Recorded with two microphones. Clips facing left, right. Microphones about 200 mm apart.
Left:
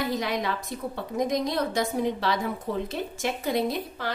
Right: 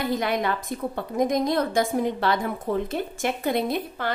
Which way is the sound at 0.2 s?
55° right (ahead or behind).